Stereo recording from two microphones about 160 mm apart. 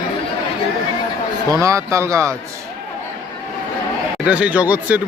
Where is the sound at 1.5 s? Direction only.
20° right (ahead or behind).